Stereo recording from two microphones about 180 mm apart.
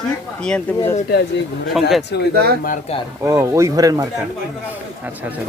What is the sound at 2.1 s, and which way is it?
Speech, 70° left (ahead or behind).